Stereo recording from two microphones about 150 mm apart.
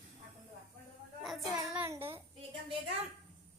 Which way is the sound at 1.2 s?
Centre (ahead or behind).